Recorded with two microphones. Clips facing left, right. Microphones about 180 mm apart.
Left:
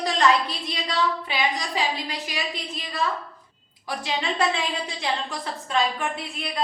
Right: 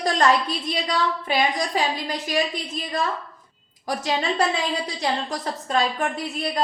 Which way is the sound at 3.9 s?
45° right (ahead or behind).